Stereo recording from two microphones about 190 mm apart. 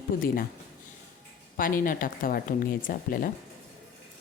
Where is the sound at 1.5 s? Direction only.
45° left (ahead or behind).